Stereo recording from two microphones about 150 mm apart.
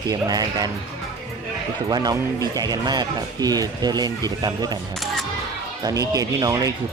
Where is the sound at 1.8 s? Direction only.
25° right (ahead or behind).